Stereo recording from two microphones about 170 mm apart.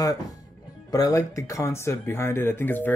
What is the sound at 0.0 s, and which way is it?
Speech, 20° left (ahead or behind).